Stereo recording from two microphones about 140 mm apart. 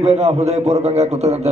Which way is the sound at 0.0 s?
50° right (ahead or behind).